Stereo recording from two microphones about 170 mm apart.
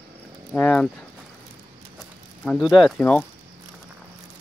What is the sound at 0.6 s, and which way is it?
Speech, 5° left (ahead or behind).